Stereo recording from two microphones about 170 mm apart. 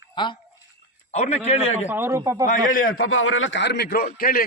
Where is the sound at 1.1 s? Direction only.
40° left (ahead or behind).